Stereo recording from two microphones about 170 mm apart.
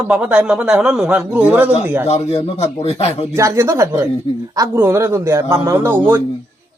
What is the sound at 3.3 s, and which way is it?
Speech, 15° right (ahead or behind).